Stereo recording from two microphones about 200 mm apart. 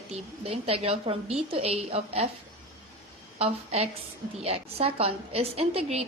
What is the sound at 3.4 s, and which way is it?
A woman's voice, 30° right (ahead or behind).